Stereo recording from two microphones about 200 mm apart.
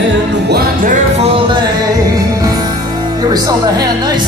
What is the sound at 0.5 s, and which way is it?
Music, 40° right (ahead or behind).